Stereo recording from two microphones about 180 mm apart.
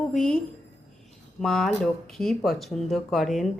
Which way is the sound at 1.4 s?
Centre (ahead or behind).